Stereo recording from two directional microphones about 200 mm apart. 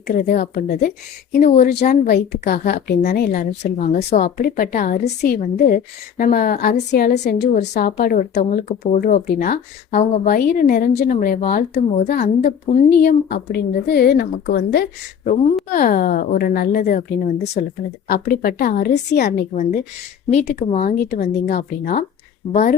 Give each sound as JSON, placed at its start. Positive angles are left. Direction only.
{"t": 0.1, "sound": "speech", "side_deg": 45}
{"t": 7.6, "sound": "a woman's voice", "side_deg": 40}
{"t": 18.1, "sound": "speech", "side_deg": 50}
{"t": 20.3, "sound": "a woman's voice", "side_deg": 35}
{"t": 22.4, "sound": "speech", "side_deg": 30}